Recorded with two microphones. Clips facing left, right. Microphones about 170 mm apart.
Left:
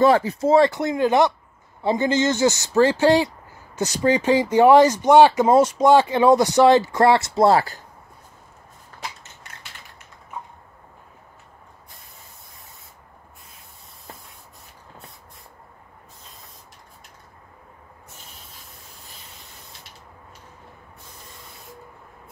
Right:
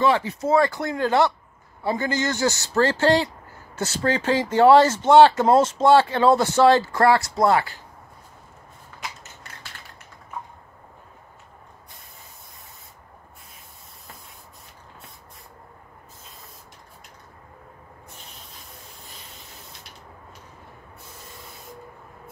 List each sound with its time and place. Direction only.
0.0 s a man's voice: 40° left (ahead or behind)